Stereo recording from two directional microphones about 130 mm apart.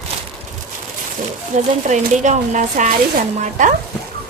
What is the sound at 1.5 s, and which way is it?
A woman's voice, 70° right (ahead or behind).